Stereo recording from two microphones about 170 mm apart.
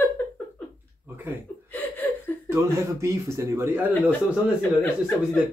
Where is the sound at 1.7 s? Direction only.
10° left (ahead or behind).